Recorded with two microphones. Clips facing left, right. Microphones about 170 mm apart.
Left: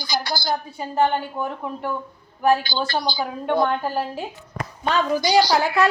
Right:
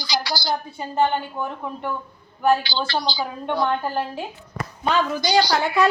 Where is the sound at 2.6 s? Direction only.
50° left (ahead or behind).